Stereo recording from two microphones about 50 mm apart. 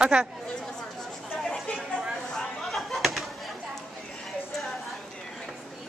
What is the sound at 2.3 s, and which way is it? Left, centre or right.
Chatter, centre.